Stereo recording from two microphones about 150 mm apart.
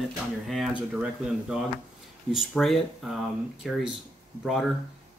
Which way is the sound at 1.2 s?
5° right (ahead or behind).